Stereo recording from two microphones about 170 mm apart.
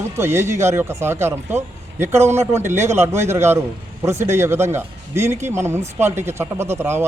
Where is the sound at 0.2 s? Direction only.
15° right (ahead or behind).